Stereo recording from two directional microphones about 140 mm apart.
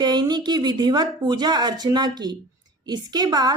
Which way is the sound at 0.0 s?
30° right (ahead or behind).